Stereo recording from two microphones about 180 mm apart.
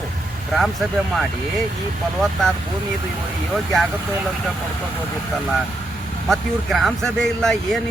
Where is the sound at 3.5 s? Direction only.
Centre (ahead or behind).